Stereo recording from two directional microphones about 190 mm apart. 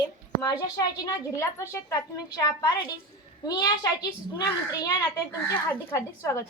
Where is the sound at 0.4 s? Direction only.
20° left (ahead or behind).